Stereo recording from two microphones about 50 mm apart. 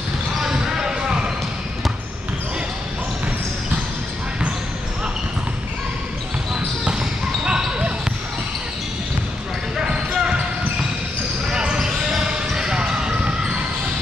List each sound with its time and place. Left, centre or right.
0.4 s basketball bounce: centre
6.8 s basketball bounce: centre
9.8 s basketball bounce: centre
11.5 s basketball bounce: centre